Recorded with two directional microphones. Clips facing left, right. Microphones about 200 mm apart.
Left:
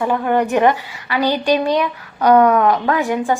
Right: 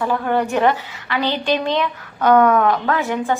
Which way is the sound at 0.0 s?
15° left (ahead or behind).